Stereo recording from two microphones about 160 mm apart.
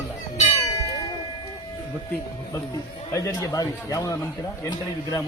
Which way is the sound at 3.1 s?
20° left (ahead or behind).